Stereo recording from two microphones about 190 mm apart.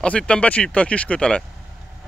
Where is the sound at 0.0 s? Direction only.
5° left (ahead or behind).